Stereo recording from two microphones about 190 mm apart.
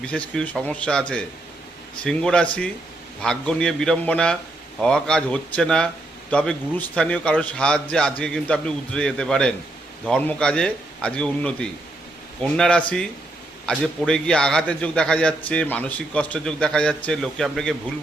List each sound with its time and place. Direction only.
0.0 s a man's voice: 5° left (ahead or behind)